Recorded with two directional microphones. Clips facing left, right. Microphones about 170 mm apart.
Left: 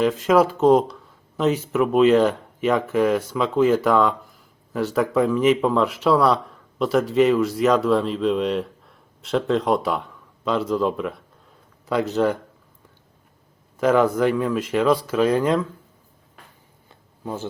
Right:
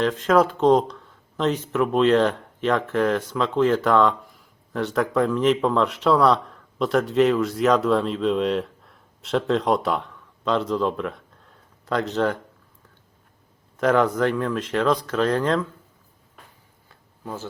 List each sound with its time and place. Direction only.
0.0 s speech: 5° left (ahead or behind)
13.7 s speech: 5° left (ahead or behind)
16.9 s a sound: 20° left (ahead or behind)